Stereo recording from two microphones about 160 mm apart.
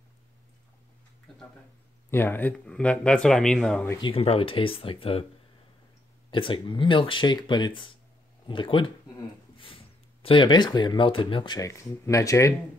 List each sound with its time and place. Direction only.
1.3 s a sound: centre (ahead or behind)
2.0 s speech: 15° left (ahead or behind)
4.0 s speech: 40° left (ahead or behind)
6.3 s speech: 30° left (ahead or behind)